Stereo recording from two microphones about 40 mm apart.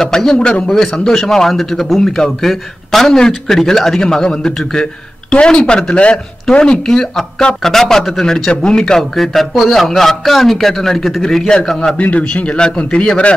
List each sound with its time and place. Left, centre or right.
0.0 s a man's voice: centre
3.2 s a man's voice: centre
12.0 s a man's voice: left